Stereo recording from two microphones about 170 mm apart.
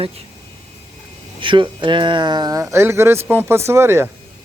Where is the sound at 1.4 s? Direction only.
30° right (ahead or behind).